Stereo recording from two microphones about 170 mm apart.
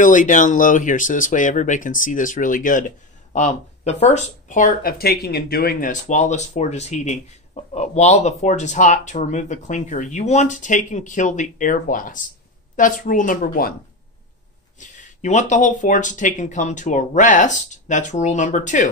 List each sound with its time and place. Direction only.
0.0 s speech: 50° left (ahead or behind)
14.8 s speech: 45° left (ahead or behind)